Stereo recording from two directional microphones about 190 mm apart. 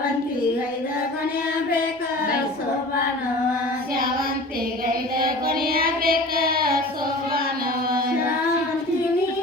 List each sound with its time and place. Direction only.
5.1 s child singing: 50° right (ahead or behind)